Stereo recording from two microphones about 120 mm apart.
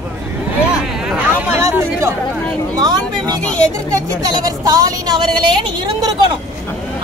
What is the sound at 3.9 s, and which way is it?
A woman's voice, 30° right (ahead or behind).